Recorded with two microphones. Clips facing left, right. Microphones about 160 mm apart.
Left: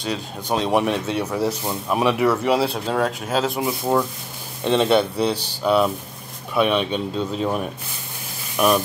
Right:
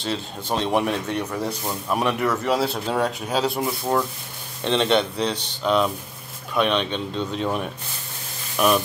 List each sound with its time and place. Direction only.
0.0 s speech: 5° left (ahead or behind)